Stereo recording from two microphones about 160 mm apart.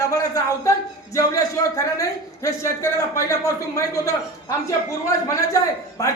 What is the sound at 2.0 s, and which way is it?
A man's voice, 20° left (ahead or behind).